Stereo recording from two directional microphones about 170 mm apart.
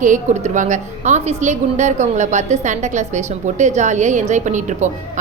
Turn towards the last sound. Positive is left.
turn(degrees=-45)  # may be behind; listen again after turning